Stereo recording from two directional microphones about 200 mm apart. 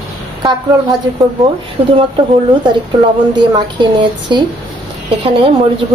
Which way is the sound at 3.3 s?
25° right (ahead or behind).